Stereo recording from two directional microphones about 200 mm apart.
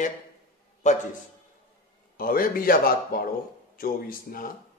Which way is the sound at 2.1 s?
45° left (ahead or behind).